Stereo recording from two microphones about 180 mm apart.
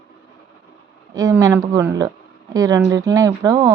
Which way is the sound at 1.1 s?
20° right (ahead or behind).